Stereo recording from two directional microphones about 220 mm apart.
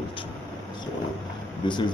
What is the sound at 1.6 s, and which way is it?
Speech, 20° left (ahead or behind).